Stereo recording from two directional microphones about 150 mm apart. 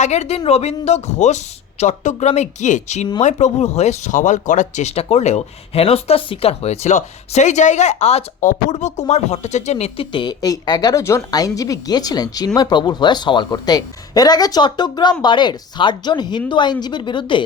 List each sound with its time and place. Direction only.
0.0 s speech: 50° left (ahead or behind); by 17.4 s 35° left (ahead or behind)